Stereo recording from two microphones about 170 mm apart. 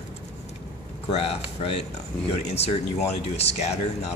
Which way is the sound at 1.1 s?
35° left (ahead or behind).